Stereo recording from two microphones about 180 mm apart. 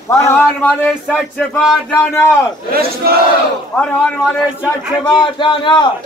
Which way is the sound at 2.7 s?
60° right (ahead or behind).